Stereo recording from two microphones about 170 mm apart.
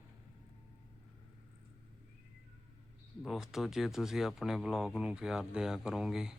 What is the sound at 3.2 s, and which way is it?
Speech, centre (ahead or behind).